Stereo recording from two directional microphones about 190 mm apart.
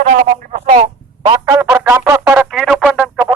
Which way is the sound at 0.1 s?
45° right (ahead or behind).